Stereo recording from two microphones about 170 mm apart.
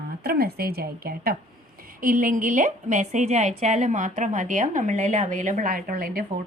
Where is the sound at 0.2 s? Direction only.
65° right (ahead or behind).